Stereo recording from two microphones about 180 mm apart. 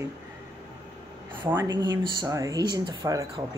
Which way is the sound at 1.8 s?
25° right (ahead or behind).